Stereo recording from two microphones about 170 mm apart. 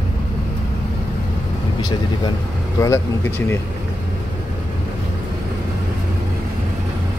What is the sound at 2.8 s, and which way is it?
Speech, 15° left (ahead or behind).